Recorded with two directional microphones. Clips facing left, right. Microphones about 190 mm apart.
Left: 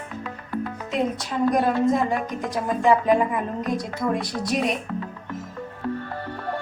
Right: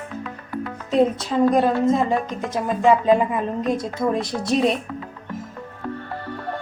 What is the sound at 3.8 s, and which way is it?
Speech, 25° right (ahead or behind).